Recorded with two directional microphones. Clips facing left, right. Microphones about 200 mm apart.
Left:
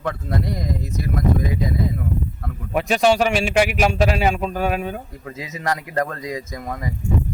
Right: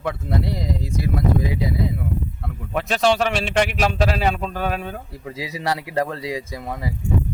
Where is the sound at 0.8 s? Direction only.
30° right (ahead or behind).